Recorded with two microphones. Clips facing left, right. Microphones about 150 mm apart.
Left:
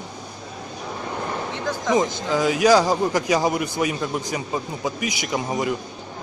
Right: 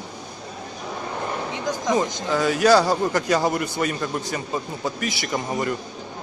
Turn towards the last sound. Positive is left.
turn(degrees=10)  # may be behind; listen again after turning